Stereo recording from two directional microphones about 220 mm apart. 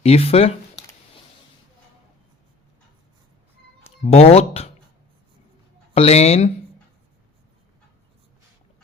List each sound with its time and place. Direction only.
0.0 s speech: 25° left (ahead or behind)
4.0 s speech: 25° left (ahead or behind)
5.9 s speech: 30° left (ahead or behind)